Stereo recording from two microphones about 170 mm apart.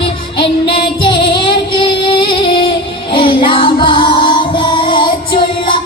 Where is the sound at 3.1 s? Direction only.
30° left (ahead or behind).